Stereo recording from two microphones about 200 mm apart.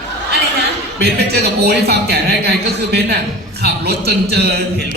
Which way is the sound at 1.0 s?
55° right (ahead or behind).